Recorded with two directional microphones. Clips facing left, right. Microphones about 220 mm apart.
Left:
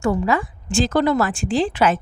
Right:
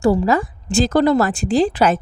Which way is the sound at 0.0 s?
35° right (ahead or behind).